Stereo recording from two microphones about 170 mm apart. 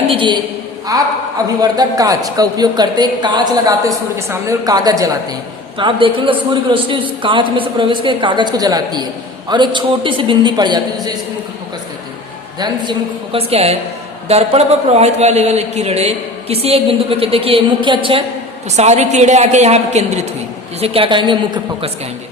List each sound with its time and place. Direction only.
0.1 s a woman's voice: 30° right (ahead or behind)
12.5 s a man's voice: 25° right (ahead or behind)
18.8 s a man's voice: 40° right (ahead or behind)